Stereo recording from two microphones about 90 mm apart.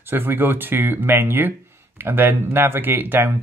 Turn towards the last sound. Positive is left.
turn(degrees=-25)  # may be behind; listen again after turning